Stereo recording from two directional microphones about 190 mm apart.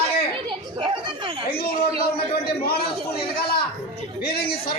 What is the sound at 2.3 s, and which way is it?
Speech, 55° left (ahead or behind).